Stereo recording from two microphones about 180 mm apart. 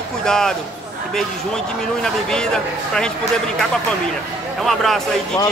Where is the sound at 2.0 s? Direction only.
5° left (ahead or behind).